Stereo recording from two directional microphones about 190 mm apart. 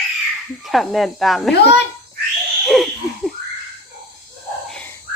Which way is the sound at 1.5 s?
60° left (ahead or behind).